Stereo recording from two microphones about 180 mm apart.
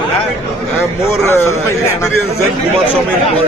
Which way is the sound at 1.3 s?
15° left (ahead or behind).